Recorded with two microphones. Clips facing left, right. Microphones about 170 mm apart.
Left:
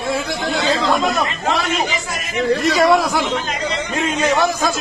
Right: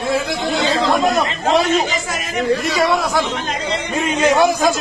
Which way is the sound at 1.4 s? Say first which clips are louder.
Right 6 dB; 40° right (ahead or behind).